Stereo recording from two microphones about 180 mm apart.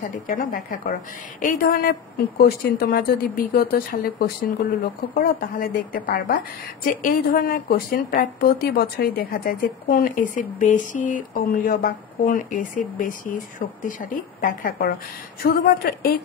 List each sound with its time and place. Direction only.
0.4 s a woman's voice: 50° left (ahead or behind)